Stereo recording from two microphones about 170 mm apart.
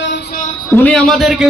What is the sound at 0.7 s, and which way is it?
Speech, 5° left (ahead or behind).